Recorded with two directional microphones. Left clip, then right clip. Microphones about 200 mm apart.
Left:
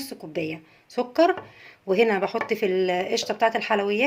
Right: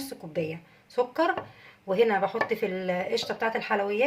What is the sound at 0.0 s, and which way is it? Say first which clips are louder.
Speech: left 2 dB; 40° left (ahead or behind).